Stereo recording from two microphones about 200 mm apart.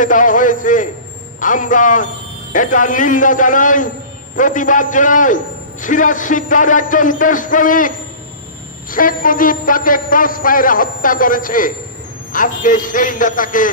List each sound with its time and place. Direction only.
0.0 s a man's voice: 40° left (ahead or behind)